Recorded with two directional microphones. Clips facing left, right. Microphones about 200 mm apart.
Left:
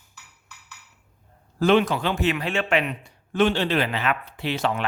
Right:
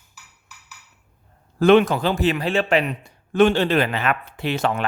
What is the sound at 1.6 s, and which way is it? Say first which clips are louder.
A man's voice: right 5 dB; 55° right (ahead or behind).